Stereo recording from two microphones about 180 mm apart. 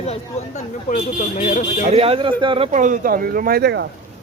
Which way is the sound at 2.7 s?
45° right (ahead or behind).